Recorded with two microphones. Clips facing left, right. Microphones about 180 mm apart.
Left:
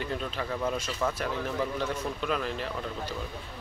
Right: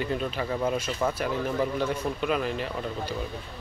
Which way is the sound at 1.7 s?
5° right (ahead or behind).